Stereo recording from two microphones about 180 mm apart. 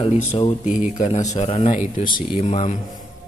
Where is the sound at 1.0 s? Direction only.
40° left (ahead or behind).